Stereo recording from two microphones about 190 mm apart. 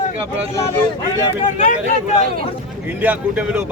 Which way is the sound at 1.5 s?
40° left (ahead or behind).